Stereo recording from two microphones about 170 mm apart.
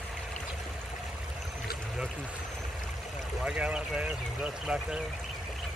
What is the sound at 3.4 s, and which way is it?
Speech, 5° right (ahead or behind).